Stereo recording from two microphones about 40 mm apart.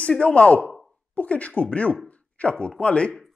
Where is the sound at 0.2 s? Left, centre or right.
Left.